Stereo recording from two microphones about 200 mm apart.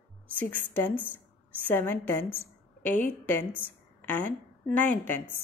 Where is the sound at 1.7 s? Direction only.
10° left (ahead or behind).